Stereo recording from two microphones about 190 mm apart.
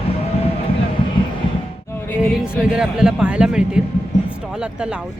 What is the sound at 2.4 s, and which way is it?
A man's voice, 5° right (ahead or behind).